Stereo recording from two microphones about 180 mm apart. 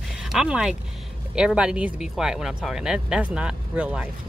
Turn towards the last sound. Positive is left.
turn(degrees=-5)  # may be behind; listen again after turning